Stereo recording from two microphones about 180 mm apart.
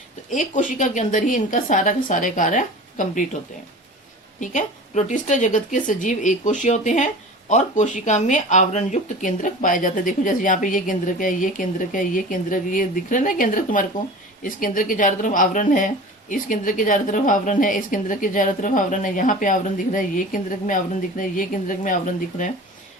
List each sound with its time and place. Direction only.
0.3 s speech: 45° left (ahead or behind)
4.4 s speech: 45° left (ahead or behind)